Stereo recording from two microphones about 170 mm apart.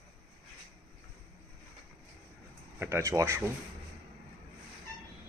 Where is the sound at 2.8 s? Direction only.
15° right (ahead or behind).